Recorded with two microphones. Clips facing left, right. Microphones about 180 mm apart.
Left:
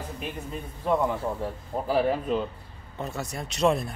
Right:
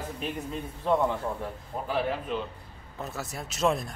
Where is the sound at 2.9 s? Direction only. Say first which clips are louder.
Left 3 dB; centre (ahead or behind).